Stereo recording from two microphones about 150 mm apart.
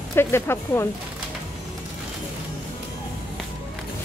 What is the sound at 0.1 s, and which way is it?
Speech, 15° left (ahead or behind).